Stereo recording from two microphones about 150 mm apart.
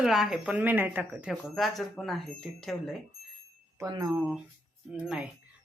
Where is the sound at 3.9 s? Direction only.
25° right (ahead or behind).